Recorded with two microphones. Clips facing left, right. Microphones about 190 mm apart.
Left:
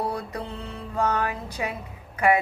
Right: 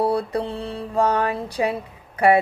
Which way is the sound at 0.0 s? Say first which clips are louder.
Right 8 dB; 35° right (ahead or behind).